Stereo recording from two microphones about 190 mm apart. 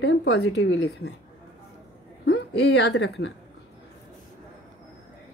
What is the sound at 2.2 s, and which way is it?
A woman's voice, 65° left (ahead or behind).